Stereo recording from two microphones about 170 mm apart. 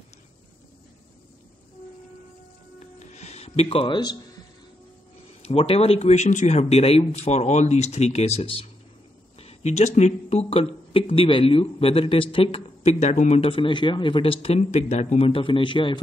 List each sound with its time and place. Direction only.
2.8 s music: 40° left (ahead or behind)
5.4 s speech: 35° left (ahead or behind)
9.4 s a sound: 40° left (ahead or behind)
9.9 s speech: 40° left (ahead or behind)